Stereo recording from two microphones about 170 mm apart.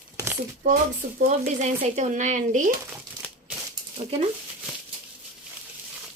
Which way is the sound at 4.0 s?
35° right (ahead or behind).